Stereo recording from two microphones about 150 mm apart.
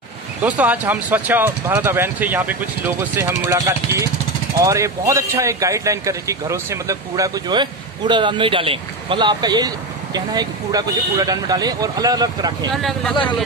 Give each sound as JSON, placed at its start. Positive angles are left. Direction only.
{"t": 0.4, "sound": "speech", "side_deg": -10}
{"t": 12.7, "sound": "speech", "side_deg": 0}
{"t": 13.1, "sound": "speech", "side_deg": 35}